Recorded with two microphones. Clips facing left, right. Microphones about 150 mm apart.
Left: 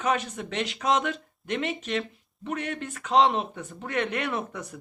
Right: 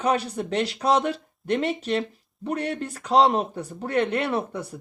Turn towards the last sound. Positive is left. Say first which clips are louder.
# right 4 dB
turn(degrees=-30)  # may be behind; listen again after turning